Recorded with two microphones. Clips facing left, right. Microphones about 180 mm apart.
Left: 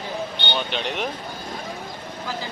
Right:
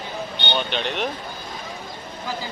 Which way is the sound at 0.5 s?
5° left (ahead or behind).